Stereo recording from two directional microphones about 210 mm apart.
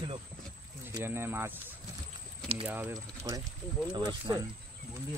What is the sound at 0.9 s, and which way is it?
Speech, 10° right (ahead or behind).